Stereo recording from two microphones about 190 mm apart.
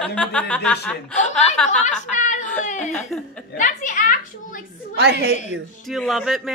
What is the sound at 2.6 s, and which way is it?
Speech, 40° left (ahead or behind).